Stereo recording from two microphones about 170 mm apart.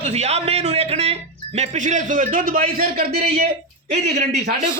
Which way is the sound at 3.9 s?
40° right (ahead or behind).